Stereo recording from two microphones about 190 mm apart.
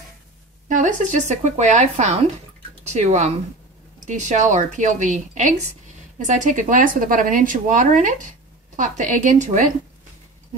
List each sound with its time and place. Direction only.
0.7 s speech: 40° right (ahead or behind)